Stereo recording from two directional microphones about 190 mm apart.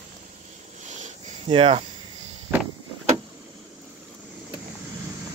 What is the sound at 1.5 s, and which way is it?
Speech, 30° right (ahead or behind).